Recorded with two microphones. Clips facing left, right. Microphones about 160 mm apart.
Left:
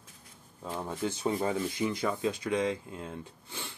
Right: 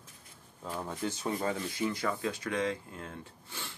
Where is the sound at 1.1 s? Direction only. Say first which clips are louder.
Left 3 dB; 25° left (ahead or behind).